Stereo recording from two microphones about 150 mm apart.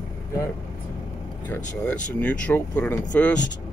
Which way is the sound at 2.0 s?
10° left (ahead or behind).